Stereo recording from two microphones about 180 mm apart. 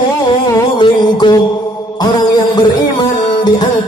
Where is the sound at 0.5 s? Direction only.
25° left (ahead or behind).